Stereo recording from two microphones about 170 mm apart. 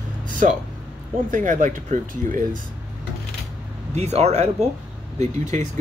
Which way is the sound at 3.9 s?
40° right (ahead or behind).